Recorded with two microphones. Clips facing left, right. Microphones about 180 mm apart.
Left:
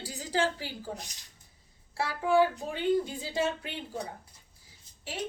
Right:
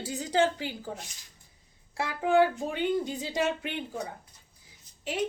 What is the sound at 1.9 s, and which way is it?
Speech, 20° right (ahead or behind).